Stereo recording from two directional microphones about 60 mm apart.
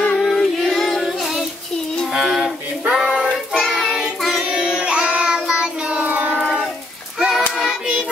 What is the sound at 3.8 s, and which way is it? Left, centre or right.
Child singing, centre.